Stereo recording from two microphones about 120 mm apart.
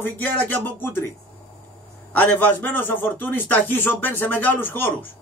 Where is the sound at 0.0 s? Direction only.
15° left (ahead or behind).